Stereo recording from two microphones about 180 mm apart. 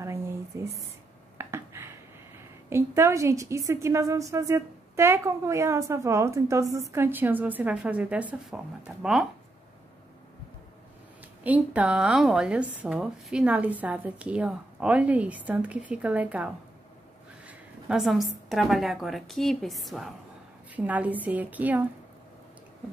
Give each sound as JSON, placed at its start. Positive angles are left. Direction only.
{"t": 0.5, "sound": "a woman's voice", "side_deg": -15}
{"t": 1.4, "sound": "a sound", "side_deg": -15}
{"t": 2.7, "sound": "a woman's voice", "side_deg": -15}
{"t": 11.4, "sound": "a woman's voice", "side_deg": -10}